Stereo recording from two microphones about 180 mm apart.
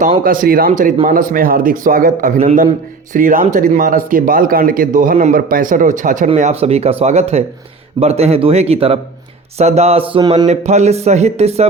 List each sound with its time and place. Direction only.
0.3 s a man's voice: 55° right (ahead or behind); by 10.4 s 25° right (ahead or behind)
10.4 s speech: 40° right (ahead or behind)